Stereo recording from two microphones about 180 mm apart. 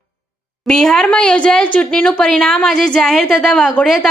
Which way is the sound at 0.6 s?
Centre (ahead or behind).